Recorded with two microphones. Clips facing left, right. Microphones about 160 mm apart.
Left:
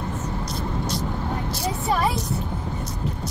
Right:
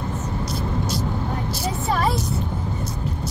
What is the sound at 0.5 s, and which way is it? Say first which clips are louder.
Vehicle: right 3 dB; 5° right (ahead or behind).